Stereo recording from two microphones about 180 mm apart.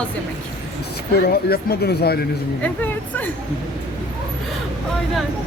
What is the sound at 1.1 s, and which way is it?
Speech, 60° left (ahead or behind).